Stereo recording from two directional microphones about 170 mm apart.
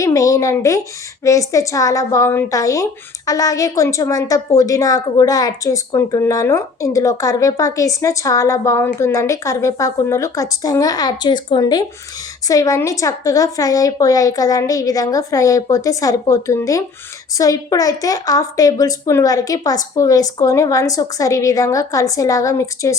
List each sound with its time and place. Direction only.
0.0 s a woman's voice: 20° left (ahead or behind)